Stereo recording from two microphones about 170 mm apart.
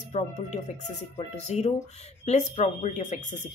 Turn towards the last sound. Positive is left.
turn(degrees=45)  # may be behind; listen again after turning